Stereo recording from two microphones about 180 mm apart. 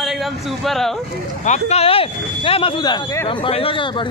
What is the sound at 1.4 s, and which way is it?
Speech, 40° left (ahead or behind).